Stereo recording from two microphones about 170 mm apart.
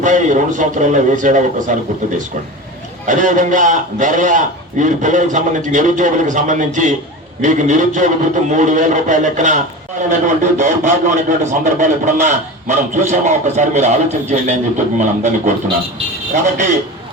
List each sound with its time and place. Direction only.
0.0 s a man's voice: 45° right (ahead or behind)